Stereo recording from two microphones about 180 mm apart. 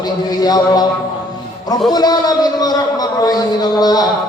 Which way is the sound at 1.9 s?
20° left (ahead or behind).